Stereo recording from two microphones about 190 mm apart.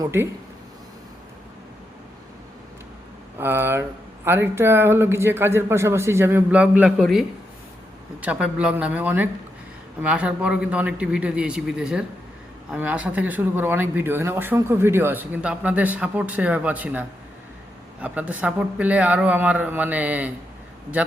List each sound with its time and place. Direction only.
0.0 s speech: 15° right (ahead or behind)
3.3 s speech: 10° right (ahead or behind)